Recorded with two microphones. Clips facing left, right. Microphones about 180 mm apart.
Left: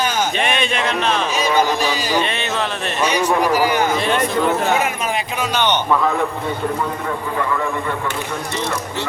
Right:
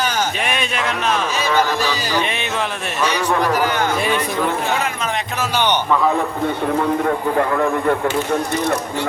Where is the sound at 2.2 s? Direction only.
15° right (ahead or behind).